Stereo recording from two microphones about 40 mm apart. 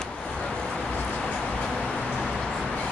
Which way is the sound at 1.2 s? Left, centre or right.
Left.